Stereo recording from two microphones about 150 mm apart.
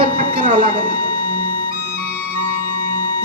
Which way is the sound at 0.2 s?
60° right (ahead or behind).